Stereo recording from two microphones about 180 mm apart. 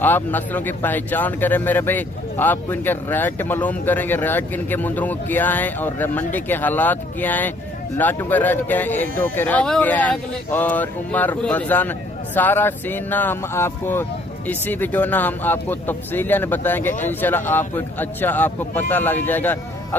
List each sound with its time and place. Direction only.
0.0 s speech: 10° left (ahead or behind)